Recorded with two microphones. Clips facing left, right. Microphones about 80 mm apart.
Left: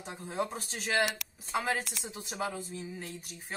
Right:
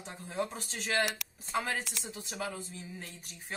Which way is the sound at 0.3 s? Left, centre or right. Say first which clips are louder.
Left 1 dB; left.